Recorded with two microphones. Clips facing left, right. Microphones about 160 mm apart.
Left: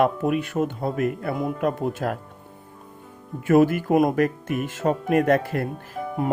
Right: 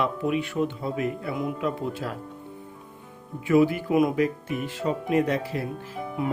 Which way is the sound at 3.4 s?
50° left (ahead or behind).